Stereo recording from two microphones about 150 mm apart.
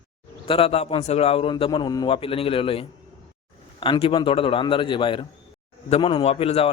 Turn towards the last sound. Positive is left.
turn(degrees=40)  # may be behind; listen again after turning